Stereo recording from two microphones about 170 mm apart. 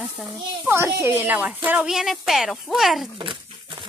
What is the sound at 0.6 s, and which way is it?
A woman's voice, 15° right (ahead or behind).